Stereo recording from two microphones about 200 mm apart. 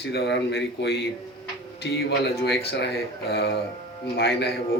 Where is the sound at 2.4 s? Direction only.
60° left (ahead or behind).